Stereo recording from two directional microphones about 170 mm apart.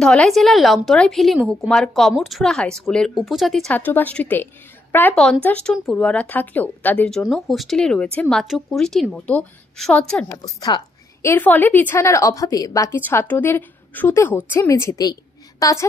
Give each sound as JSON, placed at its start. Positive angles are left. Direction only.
{"t": 0.0, "sound": "speech", "side_deg": 0}
{"t": 10.3, "sound": "a woman's voice", "side_deg": 20}
{"t": 11.2, "sound": "a woman's voice", "side_deg": 10}